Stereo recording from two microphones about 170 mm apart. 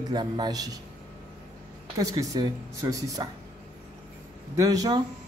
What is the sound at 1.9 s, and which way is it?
Speech, 20° right (ahead or behind).